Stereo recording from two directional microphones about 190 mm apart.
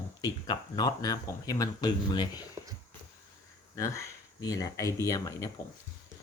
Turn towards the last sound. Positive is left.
turn(degrees=15)  # may be behind; listen again after turning